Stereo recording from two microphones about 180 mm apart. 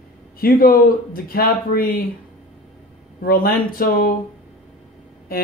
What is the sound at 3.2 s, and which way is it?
Speech, 55° left (ahead or behind).